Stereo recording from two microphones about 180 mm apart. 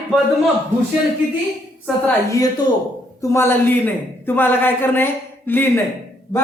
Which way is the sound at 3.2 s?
15° left (ahead or behind).